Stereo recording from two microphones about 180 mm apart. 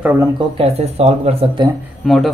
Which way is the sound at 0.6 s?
35° right (ahead or behind).